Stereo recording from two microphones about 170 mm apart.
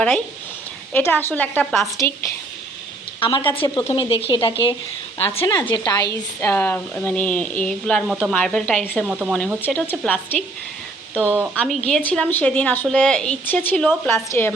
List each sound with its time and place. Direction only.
0.9 s a woman's voice: 10° left (ahead or behind)
2.0 s a woman's voice: 15° left (ahead or behind)
3.2 s a woman's voice: 30° left (ahead or behind)
6.4 s a woman's voice: 15° left (ahead or behind)
8.8 s speech: 5° right (ahead or behind)
9.6 s a woman's voice: 10° left (ahead or behind)
11.3 s speech: 10° right (ahead or behind)
11.5 s a woman's voice: 5° left (ahead or behind)